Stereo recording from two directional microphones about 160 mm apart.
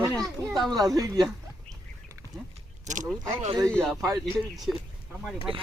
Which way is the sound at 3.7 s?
5° left (ahead or behind).